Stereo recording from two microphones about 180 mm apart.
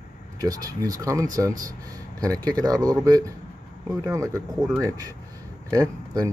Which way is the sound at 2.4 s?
20° right (ahead or behind).